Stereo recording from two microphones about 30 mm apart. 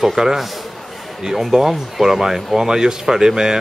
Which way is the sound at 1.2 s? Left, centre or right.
Centre.